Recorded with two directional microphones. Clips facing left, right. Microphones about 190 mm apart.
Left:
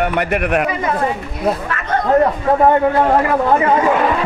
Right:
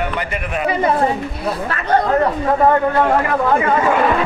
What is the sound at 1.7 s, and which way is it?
Chatter, 35° right (ahead or behind).